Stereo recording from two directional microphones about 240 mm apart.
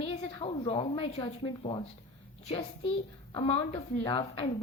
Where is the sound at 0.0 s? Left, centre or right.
Left.